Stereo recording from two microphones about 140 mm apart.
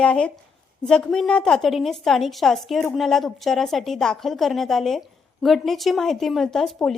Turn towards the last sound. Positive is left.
turn(degrees=0)  # may be behind; listen again after turning